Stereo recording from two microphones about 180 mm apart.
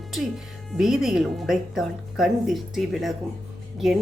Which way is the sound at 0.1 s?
Centre (ahead or behind).